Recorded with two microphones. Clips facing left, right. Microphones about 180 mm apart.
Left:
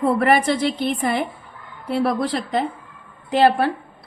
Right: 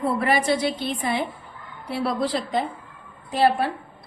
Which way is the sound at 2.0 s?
60° left (ahead or behind).